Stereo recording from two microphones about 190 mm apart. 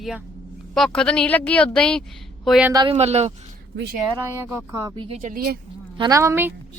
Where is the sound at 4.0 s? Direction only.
15° right (ahead or behind).